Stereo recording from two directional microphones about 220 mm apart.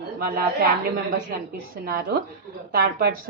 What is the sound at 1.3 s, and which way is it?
A woman's voice, 40° right (ahead or behind).